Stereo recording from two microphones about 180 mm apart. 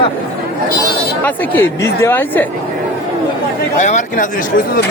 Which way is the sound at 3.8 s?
45° left (ahead or behind).